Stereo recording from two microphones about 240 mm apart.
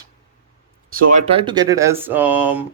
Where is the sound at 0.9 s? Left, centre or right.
Right; by 2.6 s centre.